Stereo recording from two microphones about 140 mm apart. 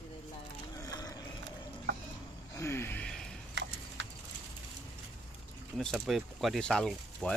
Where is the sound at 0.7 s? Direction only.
25° left (ahead or behind).